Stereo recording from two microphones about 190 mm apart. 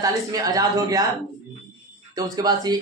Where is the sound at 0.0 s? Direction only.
20° right (ahead or behind).